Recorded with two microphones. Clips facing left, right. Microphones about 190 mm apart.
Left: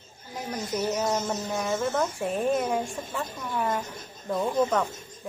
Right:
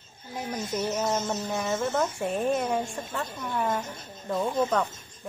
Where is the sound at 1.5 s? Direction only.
Centre (ahead or behind).